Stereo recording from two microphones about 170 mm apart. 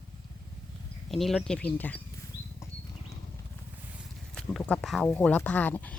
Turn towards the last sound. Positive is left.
turn(degrees=10)  # may be behind; listen again after turning